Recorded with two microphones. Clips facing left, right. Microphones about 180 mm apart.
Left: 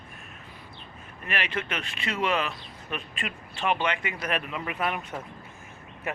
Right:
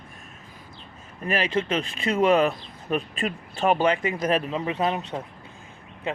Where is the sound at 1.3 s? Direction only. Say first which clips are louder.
Right 7 dB; 35° right (ahead or behind).